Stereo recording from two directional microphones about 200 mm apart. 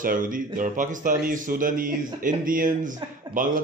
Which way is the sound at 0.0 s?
45° right (ahead or behind).